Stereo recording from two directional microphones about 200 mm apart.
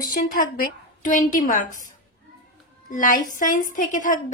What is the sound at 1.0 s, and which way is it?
A woman's voice, 40° left (ahead or behind).